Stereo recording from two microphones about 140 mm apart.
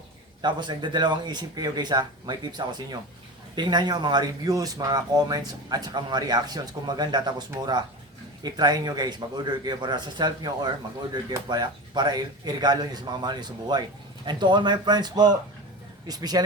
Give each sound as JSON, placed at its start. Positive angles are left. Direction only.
{"t": 0.4, "sound": "speech", "side_deg": -30}